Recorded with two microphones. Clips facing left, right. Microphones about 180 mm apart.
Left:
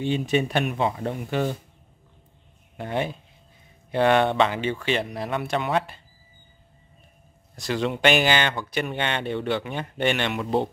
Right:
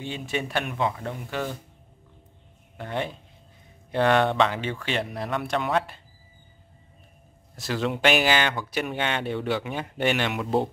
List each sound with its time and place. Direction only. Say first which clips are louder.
0.0 s speech: left 7 dB; 20° left (ahead or behind)
2.8 s speech: left 3 dB; 15° left (ahead or behind)
3.9 s speech: left 2 dB; centre (ahead or behind)
7.5 s speech: left 1 dB; centre (ahead or behind)